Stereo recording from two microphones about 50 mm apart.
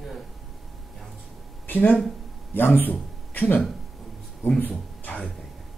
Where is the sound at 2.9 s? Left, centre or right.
Left.